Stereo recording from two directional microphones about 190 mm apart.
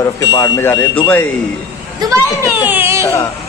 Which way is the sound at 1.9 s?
15° right (ahead or behind).